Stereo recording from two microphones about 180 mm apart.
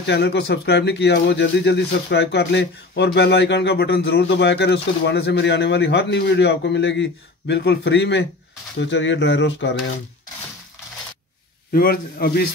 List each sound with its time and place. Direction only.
0.0 s speech: 70° left (ahead or behind)
11.7 s a man's voice: 55° left (ahead or behind)